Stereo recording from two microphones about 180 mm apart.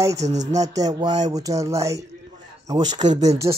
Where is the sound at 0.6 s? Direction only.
20° right (ahead or behind).